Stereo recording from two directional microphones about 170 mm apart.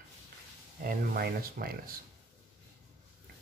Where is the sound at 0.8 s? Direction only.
60° right (ahead or behind).